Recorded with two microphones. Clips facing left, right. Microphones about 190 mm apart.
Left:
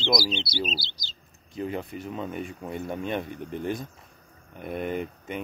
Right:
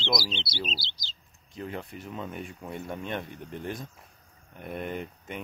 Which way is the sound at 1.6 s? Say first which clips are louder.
Left 5 dB; 5° left (ahead or behind).